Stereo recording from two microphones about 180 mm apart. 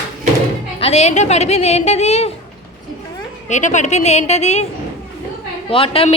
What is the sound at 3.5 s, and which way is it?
A woman's voice, 40° left (ahead or behind).